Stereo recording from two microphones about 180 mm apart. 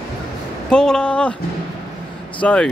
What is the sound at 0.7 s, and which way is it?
Speech, 5° left (ahead or behind).